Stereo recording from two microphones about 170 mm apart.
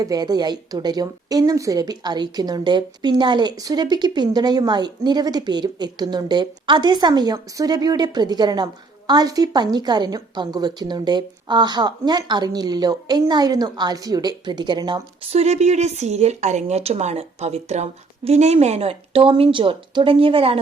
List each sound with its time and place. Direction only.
0.0 s a woman's voice: 20° right (ahead or behind)
15.2 s a woman's voice: 35° right (ahead or behind)